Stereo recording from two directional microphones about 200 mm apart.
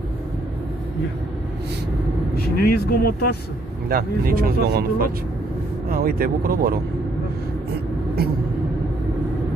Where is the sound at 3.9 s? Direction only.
45° right (ahead or behind).